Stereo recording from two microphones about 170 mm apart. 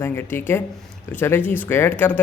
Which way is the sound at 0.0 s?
15° left (ahead or behind).